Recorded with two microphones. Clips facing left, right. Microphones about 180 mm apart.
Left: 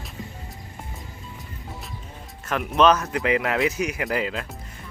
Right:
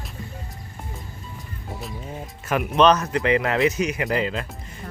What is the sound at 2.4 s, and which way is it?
Speech, 5° right (ahead or behind).